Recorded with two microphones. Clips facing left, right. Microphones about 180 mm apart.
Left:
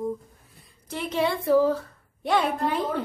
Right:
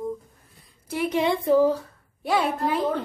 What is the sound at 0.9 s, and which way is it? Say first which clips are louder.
Speech: right 3 dB; 10° right (ahead or behind).